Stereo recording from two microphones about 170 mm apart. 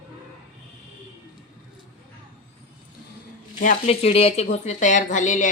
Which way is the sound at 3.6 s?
35° left (ahead or behind).